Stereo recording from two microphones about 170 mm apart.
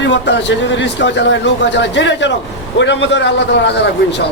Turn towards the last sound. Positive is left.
turn(degrees=90)